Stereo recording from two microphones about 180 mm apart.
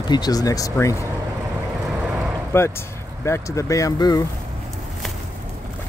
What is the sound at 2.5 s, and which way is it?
Speech, 15° left (ahead or behind).